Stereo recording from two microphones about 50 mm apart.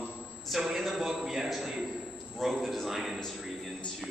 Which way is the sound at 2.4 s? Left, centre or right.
Centre.